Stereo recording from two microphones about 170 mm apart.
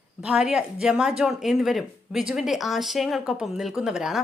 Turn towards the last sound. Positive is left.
turn(degrees=-5)  # may be behind; listen again after turning